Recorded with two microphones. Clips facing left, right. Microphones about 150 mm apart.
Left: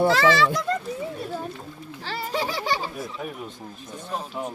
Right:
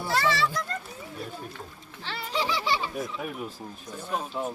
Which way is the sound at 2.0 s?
45° left (ahead or behind).